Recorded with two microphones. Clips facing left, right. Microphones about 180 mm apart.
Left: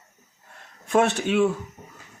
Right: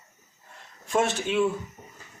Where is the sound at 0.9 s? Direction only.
60° left (ahead or behind).